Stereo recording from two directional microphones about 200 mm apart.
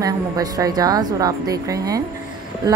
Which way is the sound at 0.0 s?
20° right (ahead or behind).